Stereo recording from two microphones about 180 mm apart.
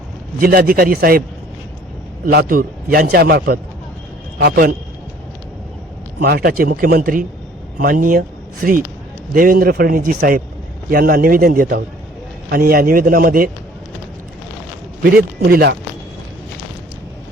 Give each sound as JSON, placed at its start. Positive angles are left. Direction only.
{"t": 0.3, "sound": "speech", "side_deg": -55}
{"t": 2.2, "sound": "a man's voice", "side_deg": -55}
{"t": 6.1, "sound": "speech", "side_deg": -55}
{"t": 15.0, "sound": "a man's voice", "side_deg": -60}